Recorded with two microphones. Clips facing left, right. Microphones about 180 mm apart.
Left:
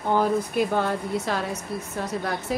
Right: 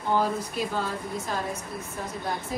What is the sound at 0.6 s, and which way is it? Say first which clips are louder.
A woman's voice: left 6 dB; 60° left (ahead or behind).